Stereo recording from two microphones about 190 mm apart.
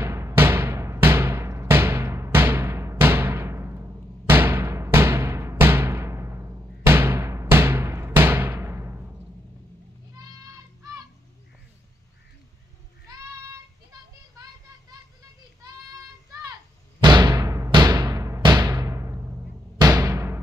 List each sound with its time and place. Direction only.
0.0 s timpani: 15° right (ahead or behind)
10.1 s child singing: 20° right (ahead or behind)
17.0 s timpani: 20° right (ahead or behind)